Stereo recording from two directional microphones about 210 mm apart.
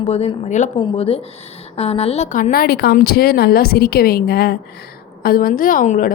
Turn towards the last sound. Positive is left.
turn(degrees=40)  # may be behind; listen again after turning